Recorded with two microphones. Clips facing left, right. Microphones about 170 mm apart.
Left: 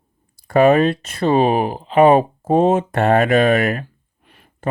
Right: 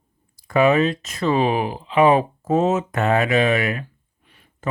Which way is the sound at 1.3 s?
45° left (ahead or behind).